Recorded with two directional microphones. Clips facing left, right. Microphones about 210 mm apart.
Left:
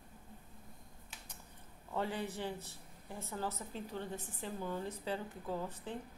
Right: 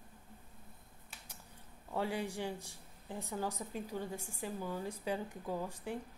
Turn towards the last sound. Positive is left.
turn(degrees=-10)  # may be behind; listen again after turning